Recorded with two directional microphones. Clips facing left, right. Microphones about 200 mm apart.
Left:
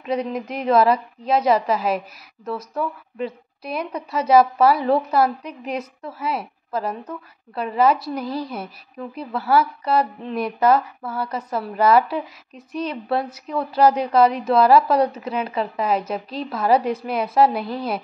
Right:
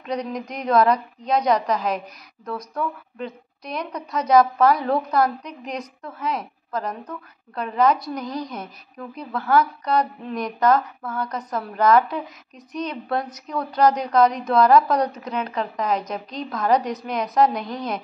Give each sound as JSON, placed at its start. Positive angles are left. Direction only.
{"t": 0.0, "sound": "a woman's voice", "side_deg": 5}